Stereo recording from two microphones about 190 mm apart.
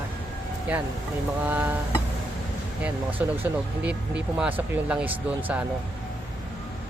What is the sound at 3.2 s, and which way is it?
Speech, 10° right (ahead or behind).